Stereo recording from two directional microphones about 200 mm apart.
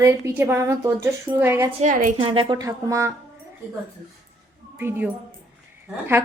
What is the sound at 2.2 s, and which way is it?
Speech, 25° right (ahead or behind).